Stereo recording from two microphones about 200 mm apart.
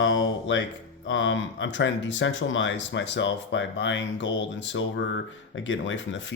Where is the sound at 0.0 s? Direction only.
70° left (ahead or behind).